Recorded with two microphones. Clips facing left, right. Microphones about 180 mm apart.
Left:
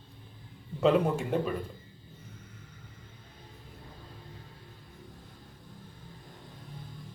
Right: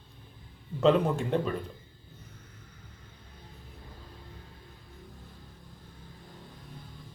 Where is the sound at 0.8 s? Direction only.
10° left (ahead or behind).